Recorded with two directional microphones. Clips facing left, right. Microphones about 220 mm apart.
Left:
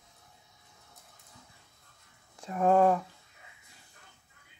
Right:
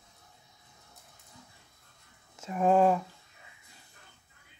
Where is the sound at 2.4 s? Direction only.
15° right (ahead or behind).